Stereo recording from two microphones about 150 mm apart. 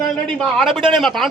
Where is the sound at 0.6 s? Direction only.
Centre (ahead or behind).